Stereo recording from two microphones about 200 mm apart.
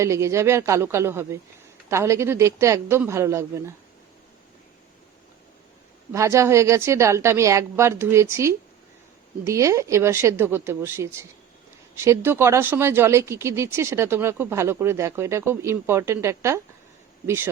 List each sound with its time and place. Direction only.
0.0 s speech: 15° right (ahead or behind)
6.1 s speech: 15° right (ahead or behind)